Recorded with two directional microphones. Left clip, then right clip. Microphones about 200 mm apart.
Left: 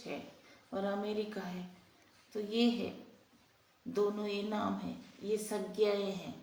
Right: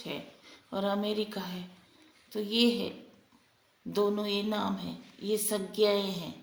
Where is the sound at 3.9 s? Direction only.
55° right (ahead or behind).